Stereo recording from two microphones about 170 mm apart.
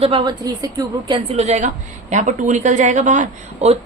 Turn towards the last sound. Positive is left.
turn(degrees=-40)  # may be behind; listen again after turning